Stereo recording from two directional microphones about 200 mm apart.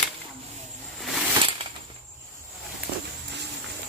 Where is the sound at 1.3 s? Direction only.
25° right (ahead or behind).